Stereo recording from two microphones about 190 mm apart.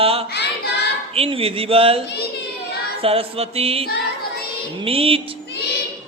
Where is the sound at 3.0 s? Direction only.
30° right (ahead or behind).